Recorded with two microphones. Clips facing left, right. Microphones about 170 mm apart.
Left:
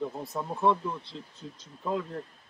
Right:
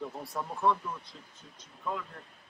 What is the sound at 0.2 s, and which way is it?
Speech, 20° left (ahead or behind).